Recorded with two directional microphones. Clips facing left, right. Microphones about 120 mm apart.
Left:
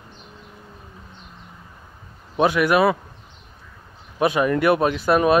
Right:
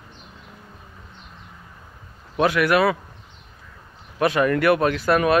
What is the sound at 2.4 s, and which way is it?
Speech, 20° left (ahead or behind).